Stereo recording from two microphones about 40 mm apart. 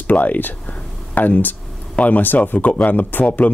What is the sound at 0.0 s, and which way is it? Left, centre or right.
Speech, left.